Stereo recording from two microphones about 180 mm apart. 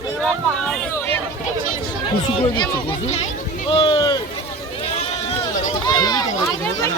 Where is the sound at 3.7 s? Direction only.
30° left (ahead or behind).